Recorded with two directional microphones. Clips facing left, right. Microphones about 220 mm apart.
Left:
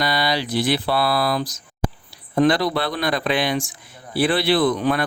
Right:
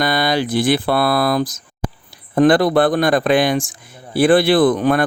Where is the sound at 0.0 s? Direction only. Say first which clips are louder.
Right 5 dB; 50° right (ahead or behind).